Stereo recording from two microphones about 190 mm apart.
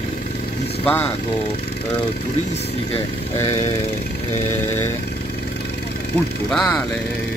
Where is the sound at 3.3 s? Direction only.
20° left (ahead or behind).